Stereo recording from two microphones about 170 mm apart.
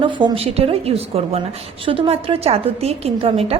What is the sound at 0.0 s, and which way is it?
A woman's voice, 30° right (ahead or behind).